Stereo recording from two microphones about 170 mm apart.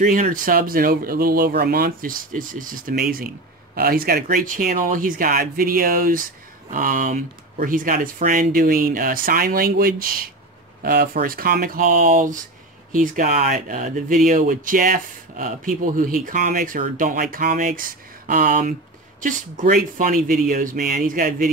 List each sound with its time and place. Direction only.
0.0 s speech: 45° right (ahead or behind)